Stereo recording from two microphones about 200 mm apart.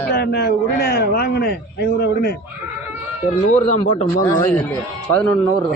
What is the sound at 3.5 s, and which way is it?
Speech, 40° left (ahead or behind).